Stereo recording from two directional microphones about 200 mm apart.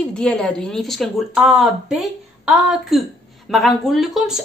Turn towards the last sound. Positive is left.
turn(degrees=0)  # may be behind; listen again after turning